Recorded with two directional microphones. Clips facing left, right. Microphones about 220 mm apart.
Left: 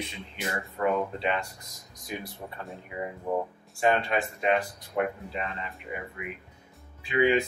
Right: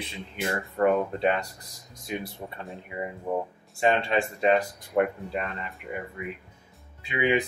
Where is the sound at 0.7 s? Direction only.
45° right (ahead or behind).